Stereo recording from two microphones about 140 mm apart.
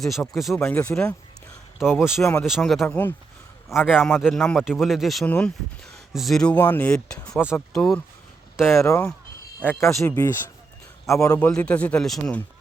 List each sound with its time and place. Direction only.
0.0 s speech: centre (ahead or behind)
0.7 s a man's voice: 10° left (ahead or behind)
1.8 s speech: 5° right (ahead or behind)
2.2 s a man's voice: 20° left (ahead or behind)
2.5 s speech: centre (ahead or behind)
2.8 s a man's voice: 15° left (ahead or behind)
3.7 s a man's voice: 5° right (ahead or behind)
8.8 s speech: 20° left (ahead or behind)
11.3 s a man's voice: 10° left (ahead or behind)